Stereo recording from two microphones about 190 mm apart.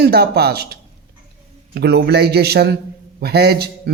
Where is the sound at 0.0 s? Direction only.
55° right (ahead or behind).